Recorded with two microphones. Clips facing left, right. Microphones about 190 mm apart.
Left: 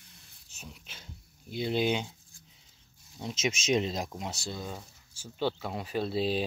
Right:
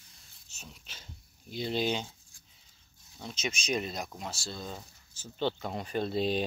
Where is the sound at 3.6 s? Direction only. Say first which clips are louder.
Left 5 dB; 25° left (ahead or behind).